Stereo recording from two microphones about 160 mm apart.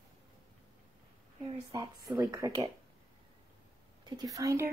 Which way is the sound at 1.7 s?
20° right (ahead or behind).